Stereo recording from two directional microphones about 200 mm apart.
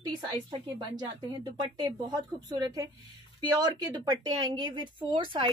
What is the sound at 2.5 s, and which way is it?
A woman's voice, 20° right (ahead or behind).